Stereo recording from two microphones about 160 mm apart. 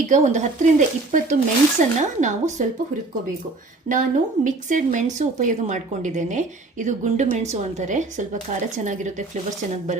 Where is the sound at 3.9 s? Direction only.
55° right (ahead or behind).